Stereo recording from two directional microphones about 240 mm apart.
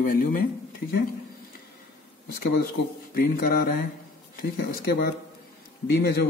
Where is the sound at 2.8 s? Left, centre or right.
Left.